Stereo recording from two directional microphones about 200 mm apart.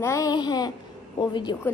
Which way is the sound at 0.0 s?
15° left (ahead or behind).